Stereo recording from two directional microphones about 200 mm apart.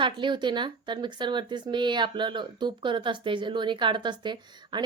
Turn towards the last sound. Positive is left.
turn(degrees=-20)  # may be behind; listen again after turning